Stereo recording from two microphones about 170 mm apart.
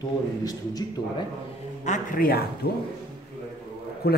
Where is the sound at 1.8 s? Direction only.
50° left (ahead or behind).